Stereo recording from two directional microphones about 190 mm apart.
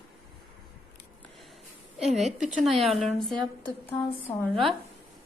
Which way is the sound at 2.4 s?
40° right (ahead or behind).